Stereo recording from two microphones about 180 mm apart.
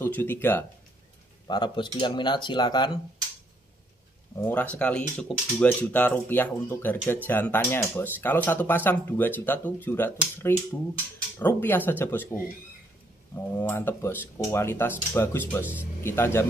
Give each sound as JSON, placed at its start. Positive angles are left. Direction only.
{"t": 0.0, "sound": "speech", "side_deg": 10}
{"t": 1.5, "sound": "speech", "side_deg": 25}
{"t": 4.4, "sound": "speech", "side_deg": 10}